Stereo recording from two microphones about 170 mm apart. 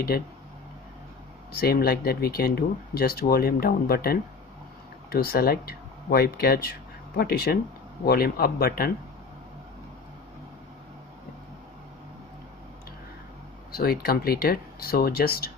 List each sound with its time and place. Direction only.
1.6 s speech: 65° left (ahead or behind)
13.7 s speech: 60° left (ahead or behind)